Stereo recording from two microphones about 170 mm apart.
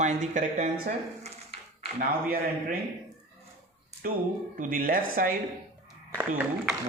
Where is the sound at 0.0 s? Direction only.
45° right (ahead or behind).